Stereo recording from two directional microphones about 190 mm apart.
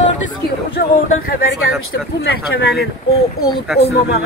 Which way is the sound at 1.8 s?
75° left (ahead or behind).